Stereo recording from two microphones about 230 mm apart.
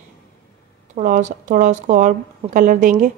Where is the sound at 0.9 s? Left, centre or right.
Right.